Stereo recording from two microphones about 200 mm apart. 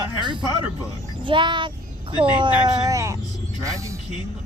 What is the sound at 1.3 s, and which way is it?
A child's voice, 25° right (ahead or behind).